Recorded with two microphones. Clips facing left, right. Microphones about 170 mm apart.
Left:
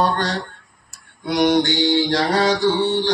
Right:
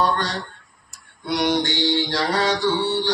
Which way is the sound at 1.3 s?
50° left (ahead or behind).